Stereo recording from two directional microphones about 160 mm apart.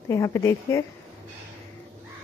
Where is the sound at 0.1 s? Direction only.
20° left (ahead or behind).